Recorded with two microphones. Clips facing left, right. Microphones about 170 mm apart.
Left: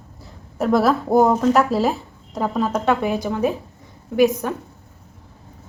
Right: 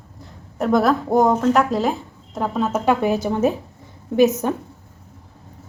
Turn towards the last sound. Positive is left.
turn(degrees=-20)  # may be behind; listen again after turning